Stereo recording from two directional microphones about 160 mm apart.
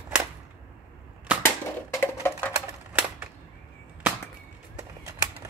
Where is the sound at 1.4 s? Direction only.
15° left (ahead or behind).